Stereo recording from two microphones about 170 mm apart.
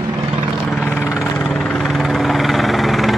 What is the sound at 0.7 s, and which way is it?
Vehicle, 5° left (ahead or behind).